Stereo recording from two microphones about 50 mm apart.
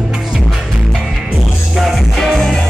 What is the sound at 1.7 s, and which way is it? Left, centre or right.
Music, centre.